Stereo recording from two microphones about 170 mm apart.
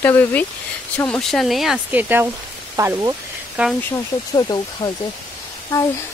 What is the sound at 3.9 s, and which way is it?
Speech, 25° left (ahead or behind).